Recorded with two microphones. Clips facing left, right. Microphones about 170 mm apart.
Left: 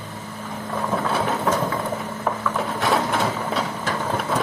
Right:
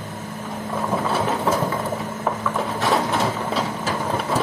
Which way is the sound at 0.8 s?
5° right (ahead or behind).